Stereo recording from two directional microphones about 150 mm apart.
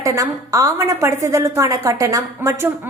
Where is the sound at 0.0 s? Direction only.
20° right (ahead or behind).